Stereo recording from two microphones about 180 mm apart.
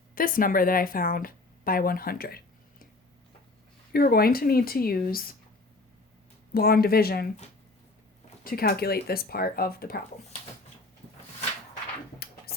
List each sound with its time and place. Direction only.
0.1 s a woman's voice: 50° left (ahead or behind)
3.9 s speech: 55° left (ahead or behind)
6.5 s speech: 55° left (ahead or behind)
8.4 s speech: 55° left (ahead or behind)